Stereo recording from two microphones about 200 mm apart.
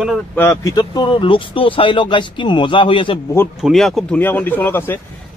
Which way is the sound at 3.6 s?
Centre (ahead or behind).